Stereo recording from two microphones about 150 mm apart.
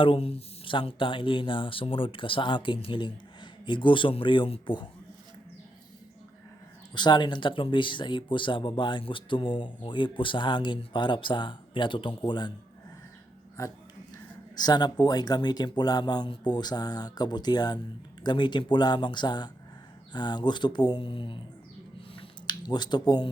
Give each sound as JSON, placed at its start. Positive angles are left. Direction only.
{"t": 0.0, "sound": "speech", "side_deg": 40}
{"t": 6.9, "sound": "speech", "side_deg": 30}
{"t": 13.6, "sound": "speech", "side_deg": 20}
{"t": 22.1, "sound": "a sound", "side_deg": 30}